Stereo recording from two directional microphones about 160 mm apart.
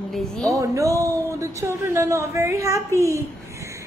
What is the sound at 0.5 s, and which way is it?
A woman's voice, 20° right (ahead or behind).